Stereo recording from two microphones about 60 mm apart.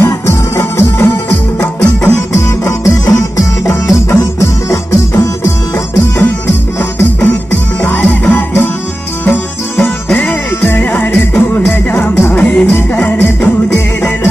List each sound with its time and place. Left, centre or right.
0.0 s music: left
4.2 s music: left
6.1 s music: left
7.8 s music: left
10.1 s music: left